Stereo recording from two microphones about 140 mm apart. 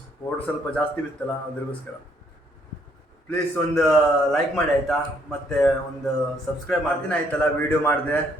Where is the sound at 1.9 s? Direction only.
15° left (ahead or behind).